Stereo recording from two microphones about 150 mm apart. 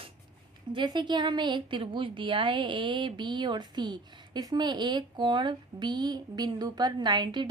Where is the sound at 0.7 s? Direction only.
30° right (ahead or behind).